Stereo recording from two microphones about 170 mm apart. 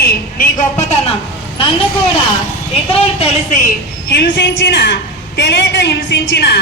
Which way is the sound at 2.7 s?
35° left (ahead or behind).